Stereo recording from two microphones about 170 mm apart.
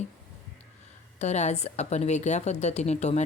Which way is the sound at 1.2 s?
40° left (ahead or behind).